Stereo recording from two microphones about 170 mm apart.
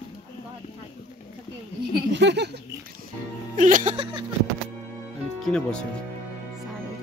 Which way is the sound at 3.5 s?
50° right (ahead or behind).